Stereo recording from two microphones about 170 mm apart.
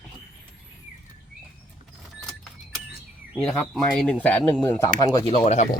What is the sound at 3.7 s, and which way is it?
Speech, 5° left (ahead or behind).